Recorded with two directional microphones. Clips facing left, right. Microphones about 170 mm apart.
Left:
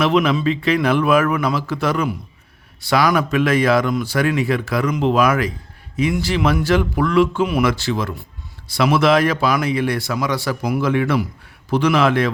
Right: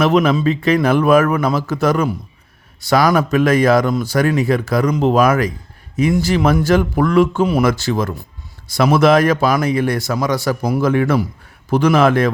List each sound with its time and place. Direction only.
0.0 s a man's voice: 45° right (ahead or behind)